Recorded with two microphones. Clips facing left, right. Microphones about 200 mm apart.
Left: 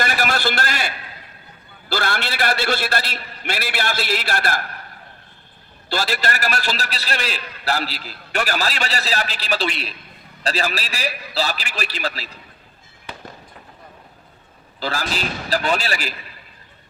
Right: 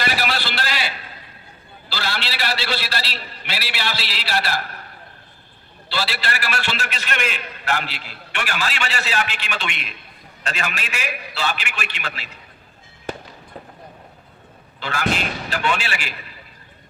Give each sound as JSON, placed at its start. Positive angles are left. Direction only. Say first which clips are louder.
{"t": 0.0, "sound": "a sound", "louder": "left 3 dB", "side_deg": 50}
{"t": 1.9, "sound": "a man's voice", "louder": "left 4 dB", "side_deg": 50}
{"t": 5.9, "sound": "a man's voice", "louder": "left 3 dB", "side_deg": 45}
{"t": 13.1, "sound": "fireworks", "louder": "right 8 dB", "side_deg": -45}
{"t": 14.8, "sound": "a man's voice", "louder": "right 1 dB", "side_deg": 35}